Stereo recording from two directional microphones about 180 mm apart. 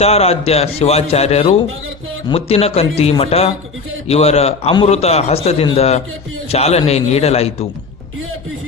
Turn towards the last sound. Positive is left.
turn(degrees=35)  # may be behind; listen again after turning